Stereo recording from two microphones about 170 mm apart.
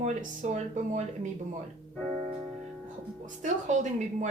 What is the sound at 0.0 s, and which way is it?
A woman's voice, 45° right (ahead or behind).